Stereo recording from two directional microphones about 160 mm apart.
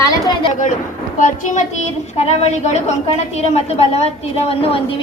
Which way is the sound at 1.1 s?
50° left (ahead or behind).